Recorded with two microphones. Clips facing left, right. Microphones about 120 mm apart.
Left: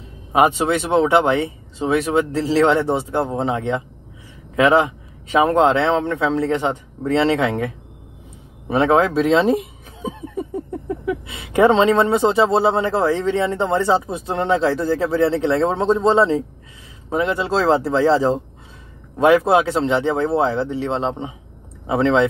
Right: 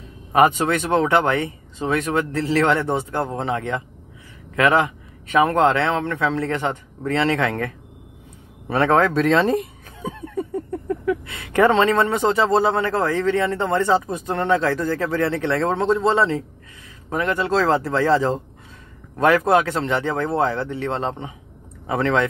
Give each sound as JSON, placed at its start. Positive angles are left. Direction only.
{"t": 0.3, "sound": "a man's voice", "side_deg": 15}